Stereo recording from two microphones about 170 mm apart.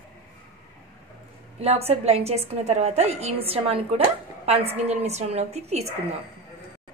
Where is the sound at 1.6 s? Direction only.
35° right (ahead or behind).